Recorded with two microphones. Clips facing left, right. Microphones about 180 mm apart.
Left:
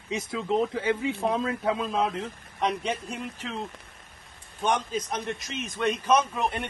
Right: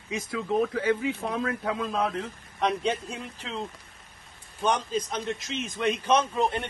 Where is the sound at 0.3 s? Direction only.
25° left (ahead or behind).